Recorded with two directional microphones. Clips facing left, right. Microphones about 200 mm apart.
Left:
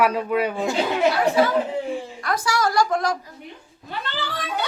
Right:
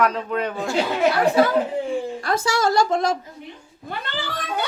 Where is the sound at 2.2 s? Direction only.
25° right (ahead or behind).